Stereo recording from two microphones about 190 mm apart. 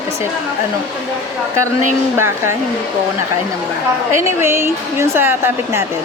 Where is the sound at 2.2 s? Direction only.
15° right (ahead or behind).